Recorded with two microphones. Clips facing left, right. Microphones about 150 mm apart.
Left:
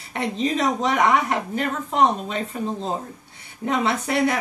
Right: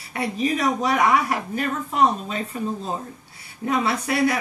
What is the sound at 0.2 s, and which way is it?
A woman's voice, 20° left (ahead or behind).